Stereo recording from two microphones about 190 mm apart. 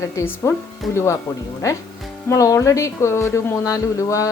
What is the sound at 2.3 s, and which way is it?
Speech, 15° left (ahead or behind).